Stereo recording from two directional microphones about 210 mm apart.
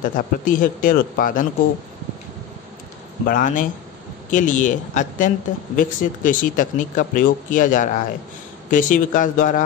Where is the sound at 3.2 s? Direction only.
40° left (ahead or behind).